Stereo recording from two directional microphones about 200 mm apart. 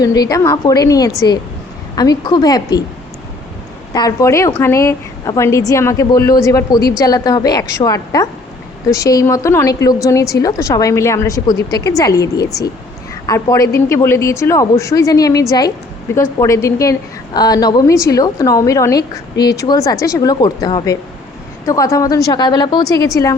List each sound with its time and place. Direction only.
0.0 s a woman's voice: 20° left (ahead or behind)
3.9 s a woman's voice: 20° left (ahead or behind)